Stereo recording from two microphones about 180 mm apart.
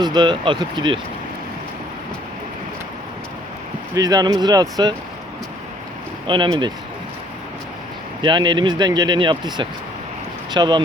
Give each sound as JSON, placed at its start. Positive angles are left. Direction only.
{"t": 0.0, "sound": "speech", "side_deg": -25}
{"t": 3.9, "sound": "speech", "side_deg": -20}
{"t": 6.2, "sound": "speech", "side_deg": -25}
{"t": 8.2, "sound": "speech", "side_deg": -25}